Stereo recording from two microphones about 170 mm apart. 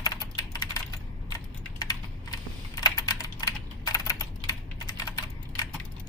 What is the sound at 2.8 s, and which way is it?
Computer keyboard, 20° left (ahead or behind).